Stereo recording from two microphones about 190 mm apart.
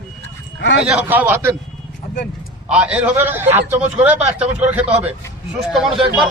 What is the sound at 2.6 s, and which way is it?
A man's voice, 5° right (ahead or behind).